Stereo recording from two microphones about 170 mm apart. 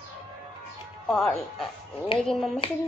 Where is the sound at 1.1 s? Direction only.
5° left (ahead or behind).